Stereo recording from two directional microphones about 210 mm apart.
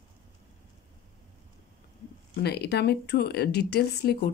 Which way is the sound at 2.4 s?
50° left (ahead or behind).